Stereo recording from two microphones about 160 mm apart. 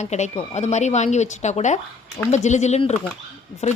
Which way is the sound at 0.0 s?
45° left (ahead or behind).